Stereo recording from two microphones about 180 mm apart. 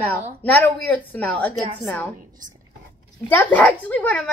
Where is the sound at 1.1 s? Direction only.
10° left (ahead or behind).